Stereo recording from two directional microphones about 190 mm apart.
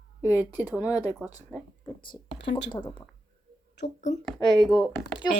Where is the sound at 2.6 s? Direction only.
20° left (ahead or behind).